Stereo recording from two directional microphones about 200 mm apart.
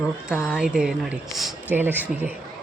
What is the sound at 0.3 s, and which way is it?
Speech, 5° right (ahead or behind).